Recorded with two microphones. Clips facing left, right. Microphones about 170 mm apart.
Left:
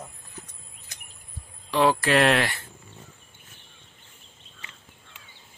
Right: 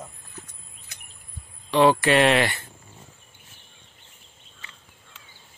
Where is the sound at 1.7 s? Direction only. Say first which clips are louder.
Right 3 dB; centre (ahead or behind).